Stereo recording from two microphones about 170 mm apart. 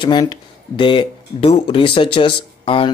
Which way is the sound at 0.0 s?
25° left (ahead or behind).